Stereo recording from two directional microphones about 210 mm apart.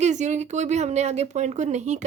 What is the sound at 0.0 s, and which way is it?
Speech, 35° right (ahead or behind).